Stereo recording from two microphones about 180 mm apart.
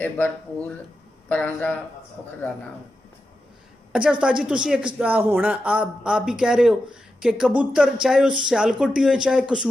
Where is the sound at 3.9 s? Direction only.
5° right (ahead or behind).